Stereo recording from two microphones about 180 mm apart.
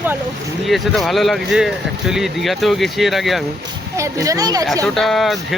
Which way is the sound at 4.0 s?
20° right (ahead or behind).